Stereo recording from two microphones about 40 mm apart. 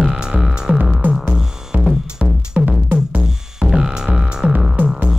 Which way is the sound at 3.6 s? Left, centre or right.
Centre.